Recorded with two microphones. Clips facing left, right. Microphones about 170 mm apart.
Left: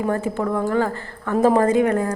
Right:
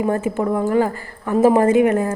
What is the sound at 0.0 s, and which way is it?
A woman's voice, 15° right (ahead or behind).